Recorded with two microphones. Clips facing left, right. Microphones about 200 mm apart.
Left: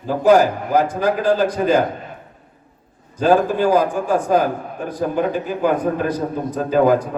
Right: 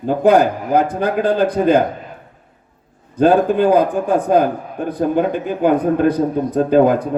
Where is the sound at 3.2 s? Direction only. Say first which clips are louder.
Right 3 dB; 60° right (ahead or behind).